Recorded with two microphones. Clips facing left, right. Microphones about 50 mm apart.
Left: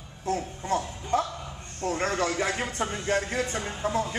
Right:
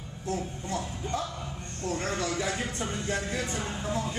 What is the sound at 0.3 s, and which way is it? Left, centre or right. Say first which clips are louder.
A man's voice: left 5 dB; left.